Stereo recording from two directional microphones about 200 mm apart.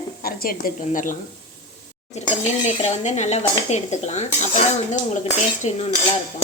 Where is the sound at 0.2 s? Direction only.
45° left (ahead or behind).